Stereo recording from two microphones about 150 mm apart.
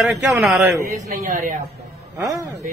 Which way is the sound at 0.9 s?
65° right (ahead or behind).